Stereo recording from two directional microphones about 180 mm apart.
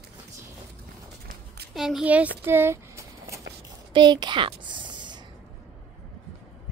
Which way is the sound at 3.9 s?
25° right (ahead or behind).